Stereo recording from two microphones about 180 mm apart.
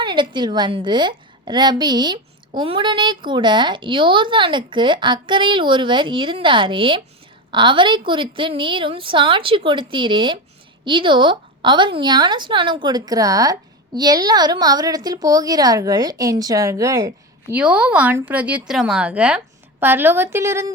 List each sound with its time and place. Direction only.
0.0 s speech: 25° right (ahead or behind)
17.5 s speech: 5° right (ahead or behind)